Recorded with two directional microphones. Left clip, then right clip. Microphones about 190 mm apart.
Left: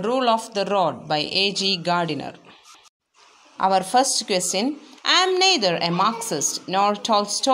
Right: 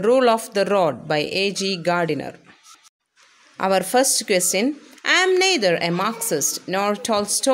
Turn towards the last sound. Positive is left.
turn(degrees=-35)  # may be behind; listen again after turning